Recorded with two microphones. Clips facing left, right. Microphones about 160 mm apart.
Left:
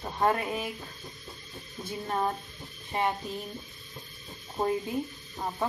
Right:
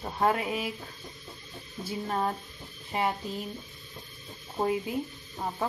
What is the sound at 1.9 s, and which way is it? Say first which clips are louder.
Speech: even; 5° right (ahead or behind).